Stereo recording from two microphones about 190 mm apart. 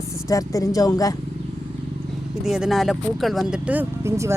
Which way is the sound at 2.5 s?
Centre (ahead or behind).